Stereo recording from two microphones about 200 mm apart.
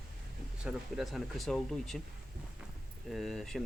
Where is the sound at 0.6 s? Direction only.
Centre (ahead or behind).